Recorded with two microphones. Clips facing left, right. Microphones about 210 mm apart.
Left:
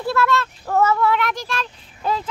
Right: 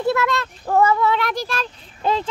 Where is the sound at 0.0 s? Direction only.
15° right (ahead or behind).